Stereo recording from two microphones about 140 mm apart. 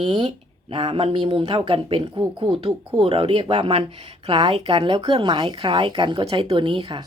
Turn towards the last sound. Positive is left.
turn(degrees=-35)  # may be behind; listen again after turning